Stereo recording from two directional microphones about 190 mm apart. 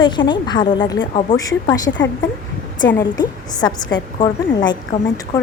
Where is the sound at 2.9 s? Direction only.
20° left (ahead or behind).